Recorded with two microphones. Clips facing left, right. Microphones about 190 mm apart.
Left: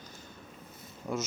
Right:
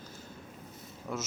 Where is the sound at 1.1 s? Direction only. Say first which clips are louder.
Left 3 dB; 15° left (ahead or behind).